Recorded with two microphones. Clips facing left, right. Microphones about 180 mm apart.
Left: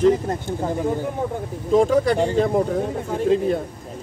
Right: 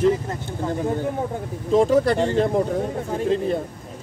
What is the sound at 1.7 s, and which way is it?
Speech, centre (ahead or behind).